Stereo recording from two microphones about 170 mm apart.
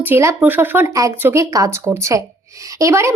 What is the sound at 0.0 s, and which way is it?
A woman's voice, 15° right (ahead or behind).